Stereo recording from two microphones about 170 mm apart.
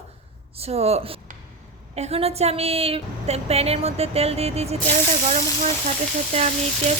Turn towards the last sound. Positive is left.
turn(degrees=-40)  # may be behind; listen again after turning